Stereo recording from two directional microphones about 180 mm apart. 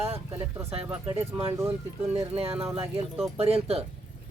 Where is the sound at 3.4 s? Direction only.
35° right (ahead or behind).